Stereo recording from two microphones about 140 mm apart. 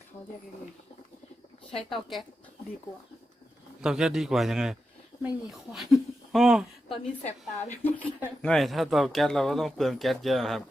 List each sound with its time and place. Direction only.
1.7 s speech: centre (ahead or behind)
3.8 s speech: 5° right (ahead or behind)
7.3 s a woman's voice: 50° left (ahead or behind)
8.4 s speech: 5° left (ahead or behind)